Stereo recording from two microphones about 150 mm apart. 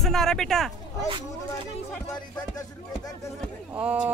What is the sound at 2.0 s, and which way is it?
Speech, 25° left (ahead or behind).